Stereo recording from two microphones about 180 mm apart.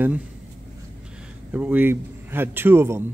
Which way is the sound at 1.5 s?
10° right (ahead or behind).